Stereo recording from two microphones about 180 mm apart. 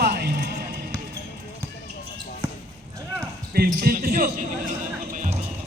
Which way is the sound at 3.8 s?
55° right (ahead or behind).